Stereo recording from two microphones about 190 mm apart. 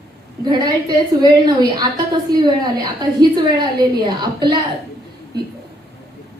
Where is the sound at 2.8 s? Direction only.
20° right (ahead or behind).